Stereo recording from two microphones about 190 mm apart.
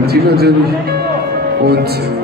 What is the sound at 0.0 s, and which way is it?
Speech, 55° right (ahead or behind).